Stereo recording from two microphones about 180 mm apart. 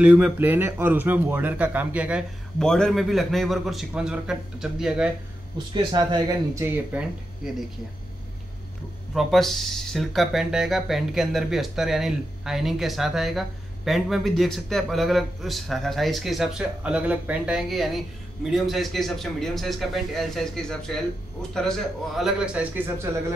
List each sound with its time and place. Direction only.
0.0 s speech: 5° right (ahead or behind)
5.8 s speech: 25° right (ahead or behind)
9.1 s speech: centre (ahead or behind)